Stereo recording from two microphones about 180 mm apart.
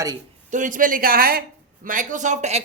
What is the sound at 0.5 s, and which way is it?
A woman's voice, 45° right (ahead or behind).